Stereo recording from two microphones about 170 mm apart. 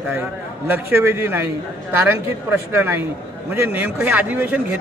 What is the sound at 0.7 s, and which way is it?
A man's voice, 15° right (ahead or behind).